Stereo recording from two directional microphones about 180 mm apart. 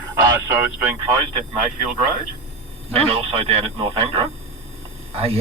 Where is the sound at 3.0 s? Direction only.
30° right (ahead or behind).